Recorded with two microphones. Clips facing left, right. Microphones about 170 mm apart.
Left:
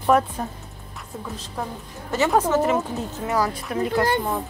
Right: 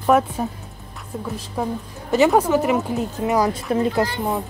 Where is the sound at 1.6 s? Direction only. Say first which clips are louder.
Right 6 dB; 10° right (ahead or behind).